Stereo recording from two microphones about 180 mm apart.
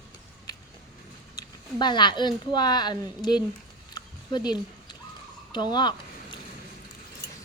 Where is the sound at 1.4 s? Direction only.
25° left (ahead or behind).